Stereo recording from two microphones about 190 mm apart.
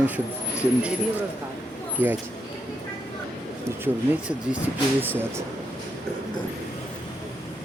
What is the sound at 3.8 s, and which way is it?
Speech, 5° right (ahead or behind).